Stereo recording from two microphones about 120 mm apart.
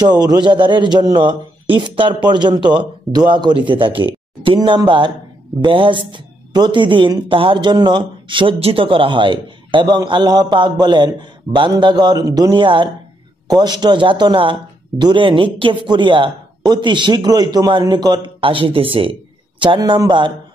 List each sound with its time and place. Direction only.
0.0 s a man's voice: 35° right (ahead or behind)
19.8 s speech: 35° right (ahead or behind)